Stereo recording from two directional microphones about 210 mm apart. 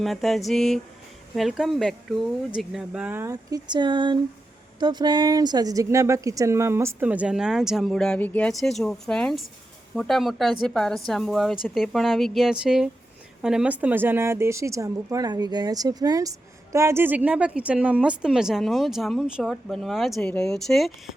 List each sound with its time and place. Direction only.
0.0 s a woman's voice: centre (ahead or behind)